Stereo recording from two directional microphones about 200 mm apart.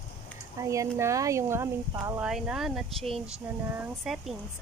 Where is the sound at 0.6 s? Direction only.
15° right (ahead or behind).